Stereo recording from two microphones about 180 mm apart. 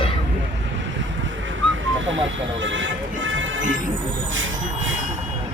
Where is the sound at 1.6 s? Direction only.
90° right.